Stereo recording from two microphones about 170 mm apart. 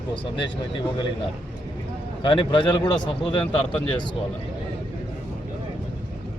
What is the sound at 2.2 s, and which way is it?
Speech, 30° left (ahead or behind).